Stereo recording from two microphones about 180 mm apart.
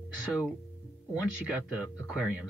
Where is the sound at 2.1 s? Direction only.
5° right (ahead or behind).